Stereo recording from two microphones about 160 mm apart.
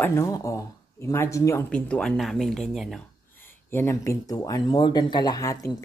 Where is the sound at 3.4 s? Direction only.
15° left (ahead or behind).